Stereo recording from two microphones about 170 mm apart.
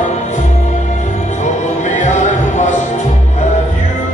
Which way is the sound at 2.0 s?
45° left (ahead or behind).